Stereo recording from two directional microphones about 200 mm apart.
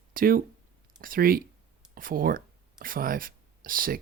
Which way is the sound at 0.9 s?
45° right (ahead or behind).